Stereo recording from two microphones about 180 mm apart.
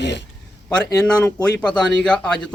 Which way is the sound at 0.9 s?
5° left (ahead or behind).